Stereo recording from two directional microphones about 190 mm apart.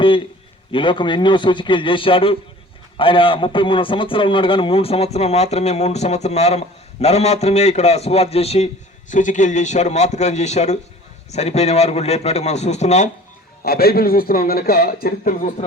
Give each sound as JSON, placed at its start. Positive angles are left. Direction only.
{"t": 0.7, "sound": "a man's voice", "side_deg": 25}
{"t": 13.7, "sound": "a man's voice", "side_deg": 55}